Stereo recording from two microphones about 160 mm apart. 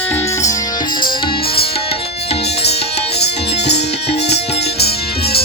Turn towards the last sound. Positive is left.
turn(degrees=90)